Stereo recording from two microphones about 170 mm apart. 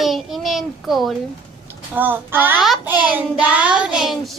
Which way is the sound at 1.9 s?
10° right (ahead or behind).